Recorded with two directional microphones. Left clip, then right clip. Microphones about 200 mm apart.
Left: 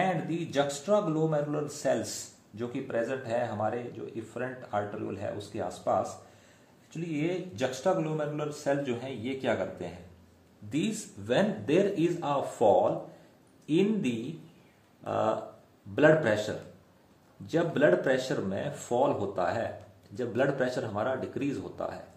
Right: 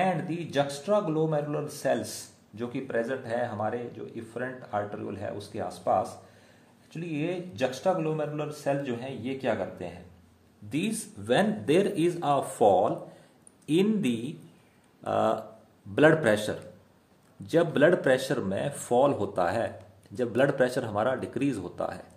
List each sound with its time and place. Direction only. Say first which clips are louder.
0.0 s a man's voice: right 1 dB; 30° right (ahead or behind); by 21.9 s 55° right (ahead or behind)